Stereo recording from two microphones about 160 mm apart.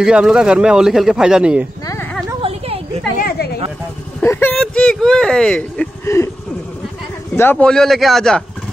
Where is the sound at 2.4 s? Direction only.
40° right (ahead or behind).